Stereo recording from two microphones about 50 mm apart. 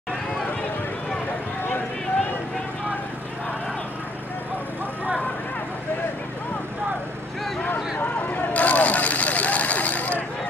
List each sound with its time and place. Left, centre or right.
7.6 s vehicle: left